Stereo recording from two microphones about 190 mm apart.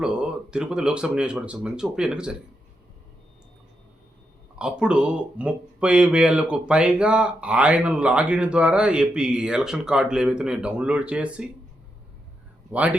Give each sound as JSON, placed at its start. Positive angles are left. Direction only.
{"t": 0.0, "sound": "speech", "side_deg": -5}
{"t": 4.5, "sound": "speech", "side_deg": -5}
{"t": 12.7, "sound": "speech", "side_deg": -5}